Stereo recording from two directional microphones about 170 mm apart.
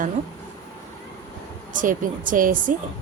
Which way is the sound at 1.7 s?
50° right (ahead or behind).